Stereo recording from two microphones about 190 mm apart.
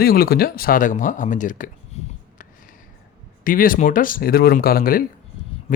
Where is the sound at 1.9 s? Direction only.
35° left (ahead or behind).